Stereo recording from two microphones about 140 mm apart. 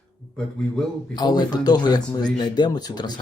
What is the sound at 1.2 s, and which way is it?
Speech, 30° left (ahead or behind).